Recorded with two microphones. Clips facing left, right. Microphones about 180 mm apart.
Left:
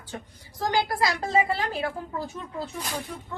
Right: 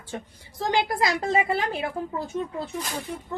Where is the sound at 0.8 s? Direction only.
20° right (ahead or behind).